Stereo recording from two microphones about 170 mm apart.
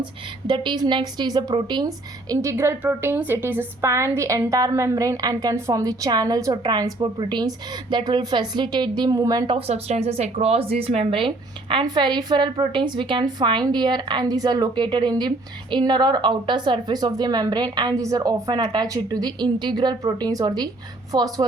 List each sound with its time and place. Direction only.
0.0 s a woman's voice: 30° right (ahead or behind)
9.6 s a woman's voice: 35° right (ahead or behind)